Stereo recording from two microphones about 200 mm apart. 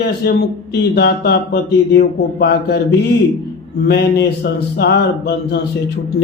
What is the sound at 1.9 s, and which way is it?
Speech, 55° left (ahead or behind).